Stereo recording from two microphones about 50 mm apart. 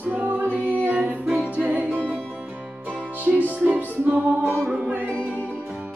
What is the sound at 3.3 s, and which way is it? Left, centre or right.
Music, centre.